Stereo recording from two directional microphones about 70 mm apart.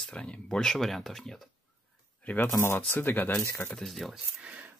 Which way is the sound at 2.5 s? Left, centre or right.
Left.